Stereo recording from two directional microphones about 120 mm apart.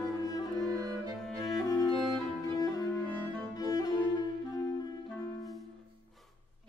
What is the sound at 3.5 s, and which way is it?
Cello, 30° left (ahead or behind).